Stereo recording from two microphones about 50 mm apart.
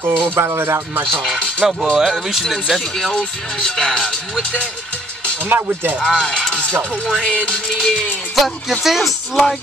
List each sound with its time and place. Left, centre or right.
0.0 s speech: right
1.6 s speech: centre
2.0 s music: centre
5.5 s speech: right
5.9 s music: centre
7.9 s music: centre